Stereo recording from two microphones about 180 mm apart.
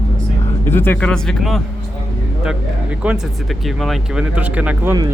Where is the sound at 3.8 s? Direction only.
Centre (ahead or behind).